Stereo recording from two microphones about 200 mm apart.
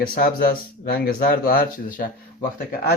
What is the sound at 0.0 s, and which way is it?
Speech, 45° left (ahead or behind).